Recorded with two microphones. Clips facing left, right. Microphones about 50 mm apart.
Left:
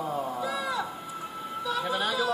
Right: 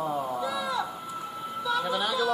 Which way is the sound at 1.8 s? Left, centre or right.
Left.